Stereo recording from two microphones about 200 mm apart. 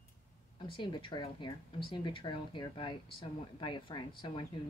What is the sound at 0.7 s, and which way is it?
Speech, 25° left (ahead or behind).